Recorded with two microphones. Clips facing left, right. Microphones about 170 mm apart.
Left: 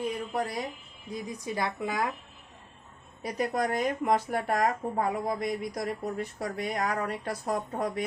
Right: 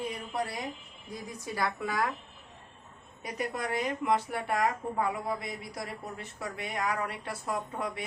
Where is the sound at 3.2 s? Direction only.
40° left (ahead or behind).